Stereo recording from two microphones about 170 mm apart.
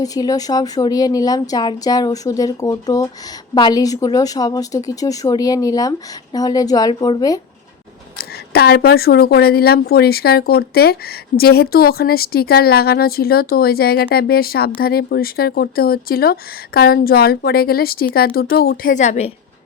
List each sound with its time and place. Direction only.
0.0 s speech: 20° left (ahead or behind)
8.2 s speech: 65° left (ahead or behind); by 19.3 s 40° left (ahead or behind)